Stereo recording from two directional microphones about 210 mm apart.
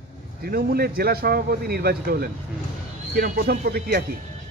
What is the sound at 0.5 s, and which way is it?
A man's voice, 45° right (ahead or behind).